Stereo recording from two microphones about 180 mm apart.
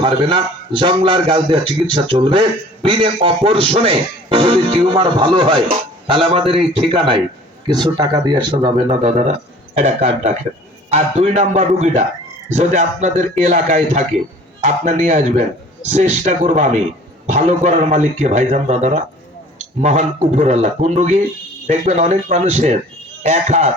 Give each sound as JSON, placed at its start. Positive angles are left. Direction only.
{"t": 0.0, "sound": "a man's voice", "side_deg": -25}